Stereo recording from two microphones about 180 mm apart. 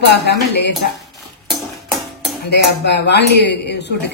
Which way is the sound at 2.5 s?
70° left (ahead or behind).